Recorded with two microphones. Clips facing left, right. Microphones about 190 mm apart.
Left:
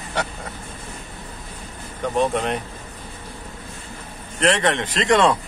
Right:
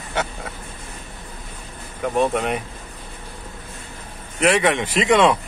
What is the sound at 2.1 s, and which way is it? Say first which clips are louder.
Speech: right 1 dB; centre (ahead or behind).